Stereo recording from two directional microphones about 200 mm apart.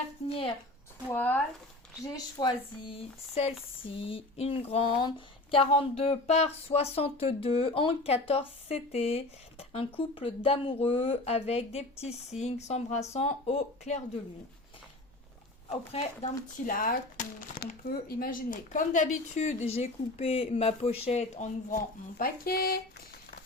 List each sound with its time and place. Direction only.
0.3 s speech: 25° left (ahead or behind)
1.1 s speech: 10° left (ahead or behind)
2.1 s speech: 25° left (ahead or behind)
15.7 s speech: 30° left (ahead or behind)
16.6 s speech: 45° left (ahead or behind)
22.2 s speech: 50° left (ahead or behind)